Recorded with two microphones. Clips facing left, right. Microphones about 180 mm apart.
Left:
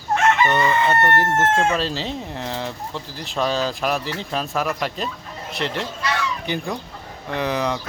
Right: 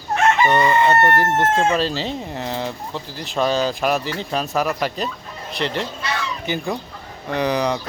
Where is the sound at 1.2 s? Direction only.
Centre (ahead or behind).